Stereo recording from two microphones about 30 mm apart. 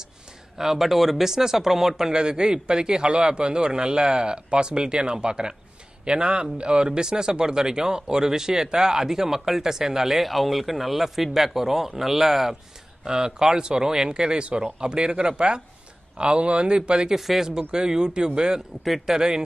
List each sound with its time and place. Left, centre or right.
0.6 s speech: centre
2.1 s speech: right
10.2 s speech: centre
13.0 s speech: right
16.2 s speech: right
17.1 s speech: centre
17.5 s speech: right